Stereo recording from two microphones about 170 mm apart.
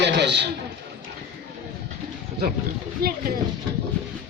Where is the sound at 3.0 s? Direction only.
65° right (ahead or behind).